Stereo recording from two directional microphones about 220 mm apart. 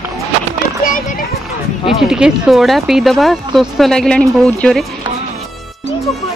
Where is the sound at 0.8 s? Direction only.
40° left (ahead or behind).